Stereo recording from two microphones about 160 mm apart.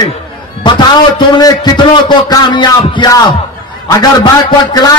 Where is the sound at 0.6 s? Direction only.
30° left (ahead or behind).